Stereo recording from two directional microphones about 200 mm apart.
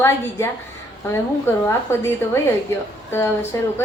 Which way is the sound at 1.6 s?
15° left (ahead or behind).